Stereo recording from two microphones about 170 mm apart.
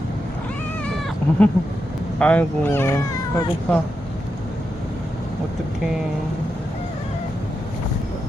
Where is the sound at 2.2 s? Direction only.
10° left (ahead or behind).